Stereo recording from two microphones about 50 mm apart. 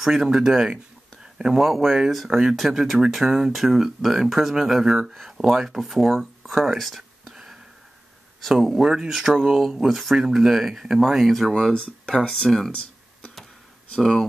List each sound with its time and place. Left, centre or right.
0.0 s speech: centre
8.4 s speech: centre
11.7 s speech: left
12.4 s speech: centre
13.9 s speech: centre